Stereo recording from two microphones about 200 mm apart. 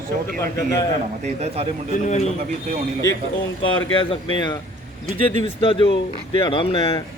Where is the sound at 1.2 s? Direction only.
35° right (ahead or behind).